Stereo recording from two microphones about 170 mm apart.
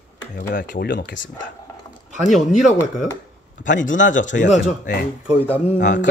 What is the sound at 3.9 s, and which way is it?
Speech, 90° left.